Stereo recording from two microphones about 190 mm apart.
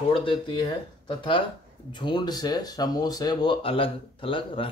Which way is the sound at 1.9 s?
25° left (ahead or behind).